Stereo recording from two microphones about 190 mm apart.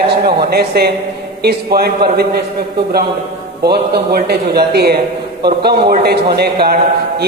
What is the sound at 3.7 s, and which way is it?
A man's voice, 55° right (ahead or behind).